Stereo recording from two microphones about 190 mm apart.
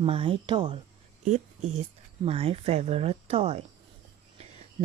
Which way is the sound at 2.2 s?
30° right (ahead or behind).